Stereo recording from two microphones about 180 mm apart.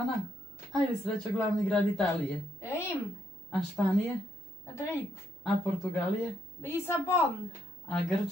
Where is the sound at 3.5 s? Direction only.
5° left (ahead or behind).